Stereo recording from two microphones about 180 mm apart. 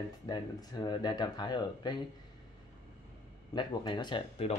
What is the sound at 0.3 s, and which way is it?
Speech, 25° left (ahead or behind).